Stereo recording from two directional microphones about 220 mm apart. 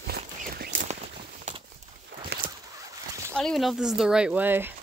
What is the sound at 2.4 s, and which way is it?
Zipper, 40° right (ahead or behind).